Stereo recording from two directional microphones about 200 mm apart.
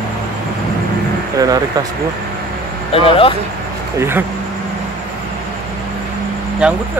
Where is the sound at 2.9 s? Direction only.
25° left (ahead or behind).